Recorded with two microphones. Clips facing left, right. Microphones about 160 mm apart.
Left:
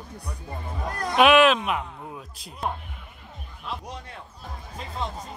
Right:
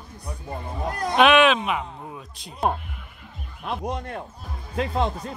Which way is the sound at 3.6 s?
55° right (ahead or behind).